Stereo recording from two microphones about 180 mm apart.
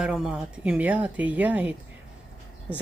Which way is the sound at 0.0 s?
5° right (ahead or behind).